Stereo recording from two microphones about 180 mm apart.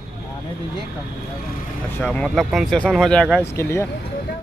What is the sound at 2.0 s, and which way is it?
Speech, 5° left (ahead or behind).